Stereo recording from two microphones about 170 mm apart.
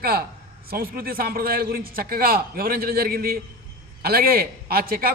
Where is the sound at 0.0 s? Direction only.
65° right (ahead or behind).